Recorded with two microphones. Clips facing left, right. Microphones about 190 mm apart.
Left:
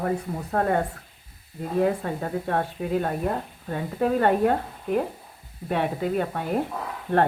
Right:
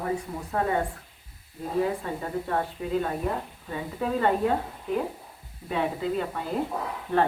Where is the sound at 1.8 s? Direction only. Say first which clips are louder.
Left 4 dB; 60° left (ahead or behind).